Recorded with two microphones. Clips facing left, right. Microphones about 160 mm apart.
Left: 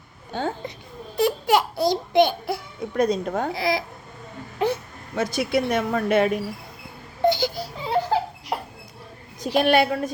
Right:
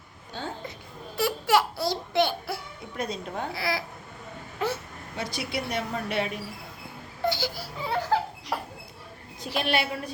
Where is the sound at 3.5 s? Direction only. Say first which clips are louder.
Left 4 dB; 15° left (ahead or behind).